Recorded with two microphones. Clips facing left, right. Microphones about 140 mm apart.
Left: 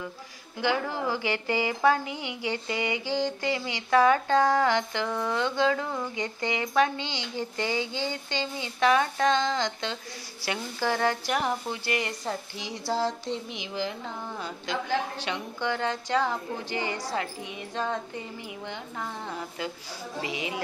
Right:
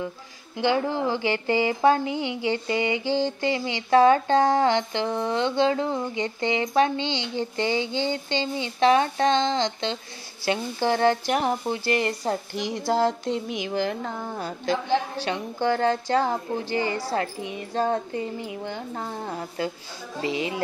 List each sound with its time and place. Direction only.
0.6 s a woman's voice: 25° right (ahead or behind)
12.5 s a sound: 50° right (ahead or behind)
14.9 s a woman's voice: 35° right (ahead or behind)